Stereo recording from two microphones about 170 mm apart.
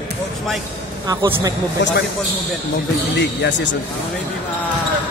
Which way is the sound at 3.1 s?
90° left.